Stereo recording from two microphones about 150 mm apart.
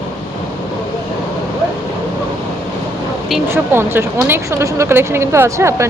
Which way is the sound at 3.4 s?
15° right (ahead or behind).